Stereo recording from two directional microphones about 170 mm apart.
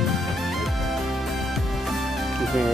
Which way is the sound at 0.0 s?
Centre (ahead or behind).